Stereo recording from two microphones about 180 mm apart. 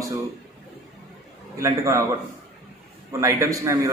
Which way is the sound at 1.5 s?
15° right (ahead or behind).